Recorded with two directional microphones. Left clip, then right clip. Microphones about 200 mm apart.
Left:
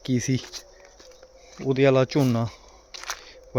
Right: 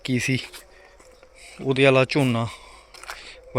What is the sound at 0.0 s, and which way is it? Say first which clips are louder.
Speech: right 2 dB; 15° left (ahead or behind).